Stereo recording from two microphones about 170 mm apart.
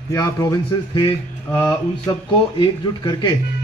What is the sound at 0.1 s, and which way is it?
Speech, 20° left (ahead or behind).